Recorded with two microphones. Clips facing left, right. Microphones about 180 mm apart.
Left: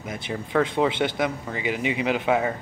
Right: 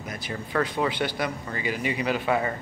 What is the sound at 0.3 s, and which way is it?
Speech, 20° left (ahead or behind).